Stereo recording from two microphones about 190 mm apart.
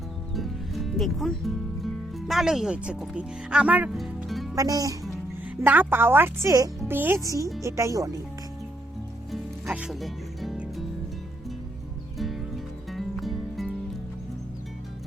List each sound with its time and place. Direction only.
0.3 s speech: centre (ahead or behind)
4.5 s speech: 20° right (ahead or behind)
9.3 s music: 5° right (ahead or behind)
12.1 s music: centre (ahead or behind)